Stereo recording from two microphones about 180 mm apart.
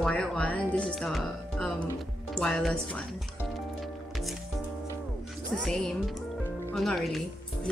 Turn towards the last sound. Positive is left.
turn(degrees=0)  # may be behind; listen again after turning